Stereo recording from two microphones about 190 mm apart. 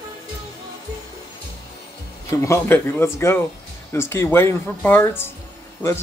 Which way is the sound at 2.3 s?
10° left (ahead or behind).